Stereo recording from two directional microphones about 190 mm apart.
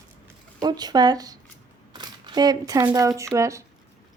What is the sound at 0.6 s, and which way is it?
Speech, 20° right (ahead or behind).